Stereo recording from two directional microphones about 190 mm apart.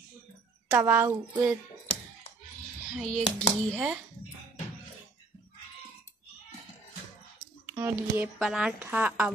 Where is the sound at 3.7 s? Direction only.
Centre (ahead or behind).